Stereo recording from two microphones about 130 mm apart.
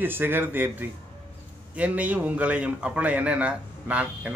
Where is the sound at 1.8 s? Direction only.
10° right (ahead or behind).